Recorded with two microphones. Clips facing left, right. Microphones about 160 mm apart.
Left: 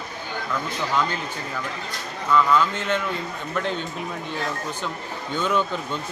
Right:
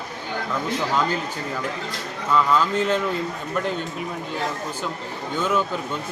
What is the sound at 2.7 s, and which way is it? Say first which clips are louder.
Speech: right 4 dB; 35° right (ahead or behind).